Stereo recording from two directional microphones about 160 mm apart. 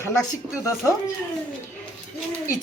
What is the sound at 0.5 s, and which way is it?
Speech, 20° left (ahead or behind).